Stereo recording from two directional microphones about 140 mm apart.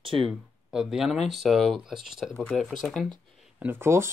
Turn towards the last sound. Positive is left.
turn(degrees=-20)  # may be behind; listen again after turning